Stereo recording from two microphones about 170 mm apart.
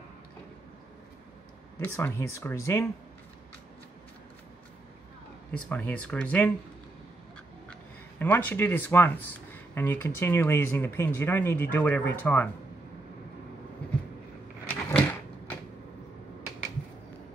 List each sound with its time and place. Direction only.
2.0 s speech: 15° left (ahead or behind)
5.5 s speech: 10° left (ahead or behind)
8.2 s speech: 10° left (ahead or behind)
14.7 s a sound: 10° left (ahead or behind)